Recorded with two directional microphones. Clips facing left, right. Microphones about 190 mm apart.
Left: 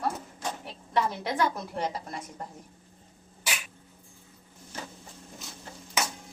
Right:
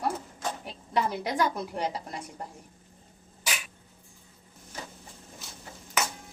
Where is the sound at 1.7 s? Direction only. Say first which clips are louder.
Even; 15° right (ahead or behind).